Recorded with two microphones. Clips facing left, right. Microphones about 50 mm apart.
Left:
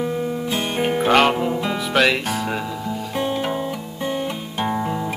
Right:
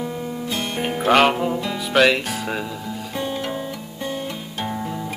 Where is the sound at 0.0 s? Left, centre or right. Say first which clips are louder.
Left 4 dB; left.